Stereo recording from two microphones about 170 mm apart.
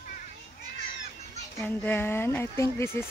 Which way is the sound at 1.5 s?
10° left (ahead or behind).